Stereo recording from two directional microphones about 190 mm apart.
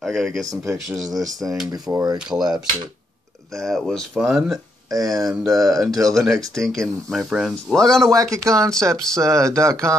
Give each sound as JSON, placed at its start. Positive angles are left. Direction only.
{"t": 0.0, "sound": "speech", "side_deg": 0}
{"t": 1.2, "sound": "speech", "side_deg": -20}
{"t": 2.1, "sound": "speech", "side_deg": -5}
{"t": 3.5, "sound": "speech", "side_deg": 0}
{"t": 4.9, "sound": "speech", "side_deg": -20}
{"t": 5.2, "sound": "speech", "side_deg": -5}
{"t": 5.5, "sound": "speech", "side_deg": -20}
{"t": 6.0, "sound": "speech", "side_deg": 0}
{"t": 8.1, "sound": "speech", "side_deg": -15}